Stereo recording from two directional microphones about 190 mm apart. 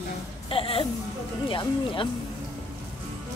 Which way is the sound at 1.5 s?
25° left (ahead or behind).